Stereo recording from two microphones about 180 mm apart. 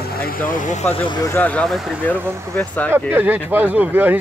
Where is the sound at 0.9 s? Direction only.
25° left (ahead or behind).